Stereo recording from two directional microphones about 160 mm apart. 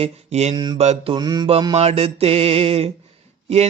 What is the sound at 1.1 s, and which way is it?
Mantra, 25° right (ahead or behind).